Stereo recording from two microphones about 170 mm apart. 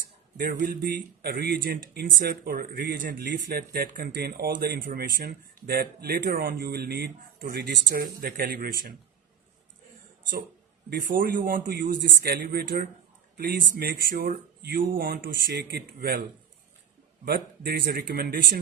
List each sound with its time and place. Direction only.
0.3 s speech: 55° right (ahead or behind)
1.2 s speech: 75° right (ahead or behind)
10.8 s speech: 60° right (ahead or behind)
17.2 s speech: 65° right (ahead or behind)